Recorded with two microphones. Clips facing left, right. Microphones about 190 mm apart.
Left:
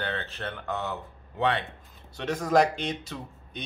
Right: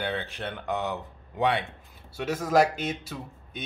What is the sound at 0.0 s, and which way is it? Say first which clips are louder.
A man's voice: right 2 dB; 15° right (ahead or behind).